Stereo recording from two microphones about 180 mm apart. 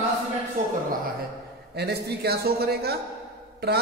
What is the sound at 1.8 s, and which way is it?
A man's voice, 65° right (ahead or behind).